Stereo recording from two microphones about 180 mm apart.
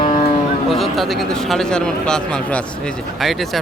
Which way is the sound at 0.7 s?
Centre (ahead or behind).